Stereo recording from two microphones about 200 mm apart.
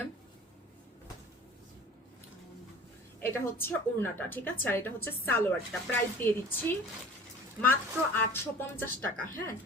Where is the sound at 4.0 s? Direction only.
10° left (ahead or behind).